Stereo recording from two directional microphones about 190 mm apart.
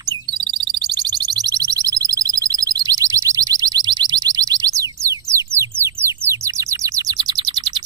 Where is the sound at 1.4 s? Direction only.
20° right (ahead or behind).